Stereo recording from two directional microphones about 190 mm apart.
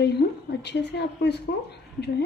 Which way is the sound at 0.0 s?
60° left (ahead or behind).